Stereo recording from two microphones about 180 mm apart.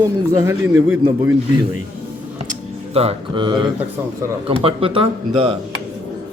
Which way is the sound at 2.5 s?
35° right (ahead or behind).